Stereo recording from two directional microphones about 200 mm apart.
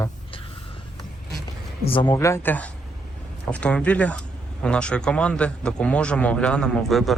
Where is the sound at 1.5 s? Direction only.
25° left (ahead or behind).